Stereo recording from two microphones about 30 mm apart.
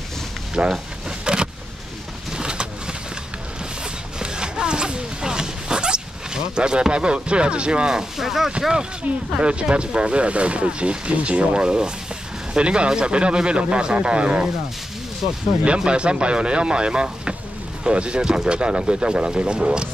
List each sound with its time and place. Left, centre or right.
0.6 s speech: right
1.2 s vehicle: right
2.3 s bird: right
4.2 s zipper: right
7.9 s speech: centre
9.4 s speech: right
15.6 s speech: right